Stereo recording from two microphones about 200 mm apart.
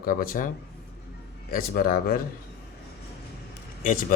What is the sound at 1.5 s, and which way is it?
Speech, 50° left (ahead or behind).